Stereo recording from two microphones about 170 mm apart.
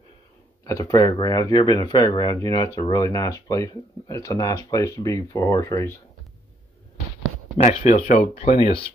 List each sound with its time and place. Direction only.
0.7 s speech: 20° left (ahead or behind)
7.5 s speech: 40° left (ahead or behind)